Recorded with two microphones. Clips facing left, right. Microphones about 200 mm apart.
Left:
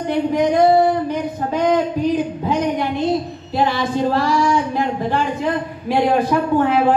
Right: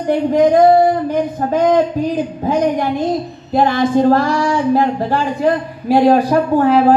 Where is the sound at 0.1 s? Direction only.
45° right (ahead or behind).